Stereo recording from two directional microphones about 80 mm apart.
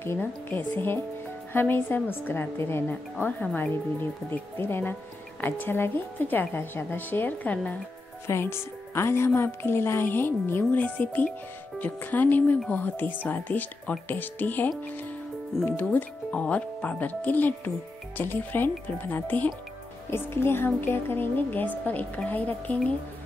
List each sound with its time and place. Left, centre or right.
0.0 s a woman's voice: left
8.3 s a woman's voice: left
15.7 s a woman's voice: left